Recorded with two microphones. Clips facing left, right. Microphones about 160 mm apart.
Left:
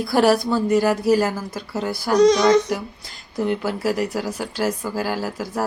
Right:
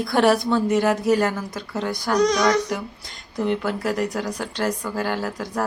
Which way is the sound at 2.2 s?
25° left (ahead or behind).